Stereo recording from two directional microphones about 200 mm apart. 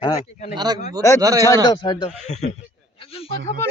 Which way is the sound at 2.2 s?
35° left (ahead or behind).